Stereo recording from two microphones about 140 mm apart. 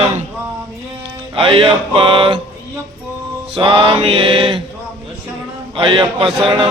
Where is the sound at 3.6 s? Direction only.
35° right (ahead or behind).